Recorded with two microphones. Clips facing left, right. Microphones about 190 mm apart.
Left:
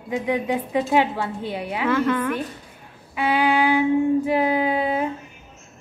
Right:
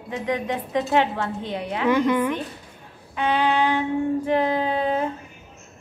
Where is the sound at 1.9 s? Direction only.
15° right (ahead or behind).